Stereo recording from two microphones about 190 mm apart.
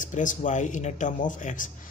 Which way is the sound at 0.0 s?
40° left (ahead or behind).